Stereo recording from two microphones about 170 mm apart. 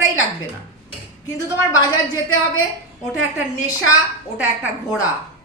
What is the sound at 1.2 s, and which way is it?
Speech, 20° left (ahead or behind).